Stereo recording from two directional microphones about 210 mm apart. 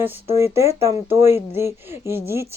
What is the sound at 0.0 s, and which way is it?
Speech, 10° right (ahead or behind).